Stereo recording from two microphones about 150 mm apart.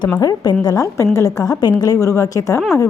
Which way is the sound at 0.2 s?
25° left (ahead or behind).